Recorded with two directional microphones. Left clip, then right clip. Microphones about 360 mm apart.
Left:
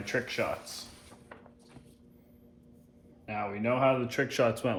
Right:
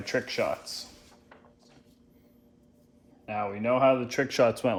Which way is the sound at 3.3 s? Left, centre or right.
Centre.